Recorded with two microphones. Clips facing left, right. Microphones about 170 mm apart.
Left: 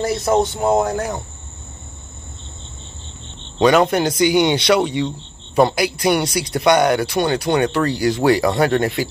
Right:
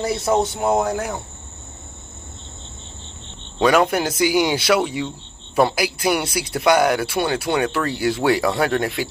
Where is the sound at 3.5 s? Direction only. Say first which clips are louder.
Left 3 dB; 5° right (ahead or behind).